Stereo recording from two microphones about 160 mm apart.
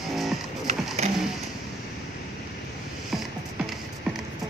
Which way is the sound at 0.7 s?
45° right (ahead or behind).